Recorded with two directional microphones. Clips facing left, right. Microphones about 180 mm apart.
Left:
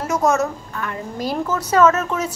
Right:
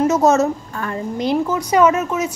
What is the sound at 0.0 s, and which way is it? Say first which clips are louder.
A woman's voice: right 5 dB; 25° right (ahead or behind).